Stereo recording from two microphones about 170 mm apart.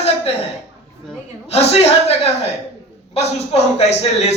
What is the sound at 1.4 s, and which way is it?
A man's voice, 35° left (ahead or behind).